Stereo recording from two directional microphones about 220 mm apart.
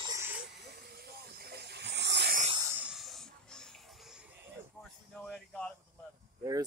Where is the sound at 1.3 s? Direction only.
45° right (ahead or behind).